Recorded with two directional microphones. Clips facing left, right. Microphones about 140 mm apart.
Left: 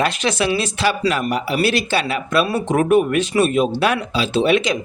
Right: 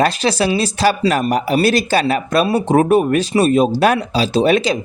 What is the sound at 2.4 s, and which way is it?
Speech, 30° right (ahead or behind).